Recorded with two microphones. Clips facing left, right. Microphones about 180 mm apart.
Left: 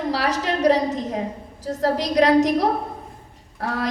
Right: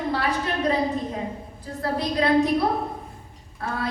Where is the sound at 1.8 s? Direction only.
90° left.